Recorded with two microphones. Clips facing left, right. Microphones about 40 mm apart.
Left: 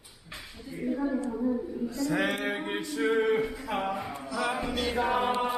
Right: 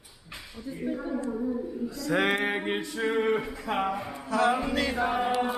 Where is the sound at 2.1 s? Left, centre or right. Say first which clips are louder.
Right 5 dB; right.